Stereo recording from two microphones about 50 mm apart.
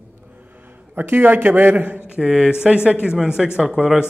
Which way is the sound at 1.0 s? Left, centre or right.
Right.